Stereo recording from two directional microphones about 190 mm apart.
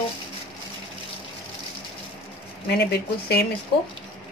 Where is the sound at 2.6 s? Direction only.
60° left (ahead or behind).